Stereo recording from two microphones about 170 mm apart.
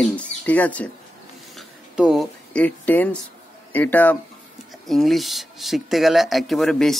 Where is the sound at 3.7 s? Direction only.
10° left (ahead or behind).